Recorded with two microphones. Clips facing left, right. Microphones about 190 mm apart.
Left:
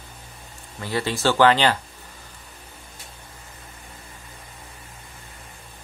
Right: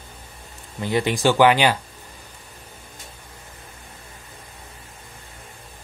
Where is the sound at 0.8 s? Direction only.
20° right (ahead or behind).